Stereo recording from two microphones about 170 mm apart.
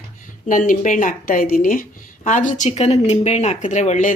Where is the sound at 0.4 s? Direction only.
50° left (ahead or behind).